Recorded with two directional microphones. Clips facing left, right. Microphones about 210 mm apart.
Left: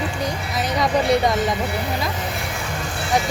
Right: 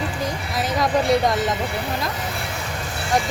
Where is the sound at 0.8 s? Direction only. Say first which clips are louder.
Even; centre (ahead or behind).